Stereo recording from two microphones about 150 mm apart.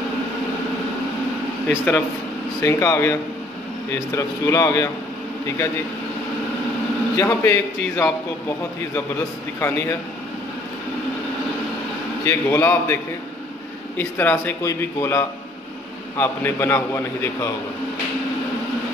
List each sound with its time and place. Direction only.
1.7 s a man's voice: 10° left (ahead or behind)
7.2 s a man's voice: 15° left (ahead or behind)
9.6 s a man's voice: 15° left (ahead or behind)
12.3 s a man's voice: 15° left (ahead or behind)